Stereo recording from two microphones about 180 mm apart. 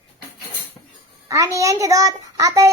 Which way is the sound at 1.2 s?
15° right (ahead or behind).